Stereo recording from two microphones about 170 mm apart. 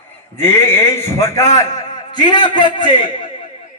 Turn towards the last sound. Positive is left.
turn(degrees=30)  # may be behind; listen again after turning